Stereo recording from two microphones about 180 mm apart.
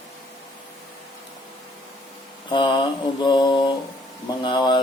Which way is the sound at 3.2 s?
25° left (ahead or behind).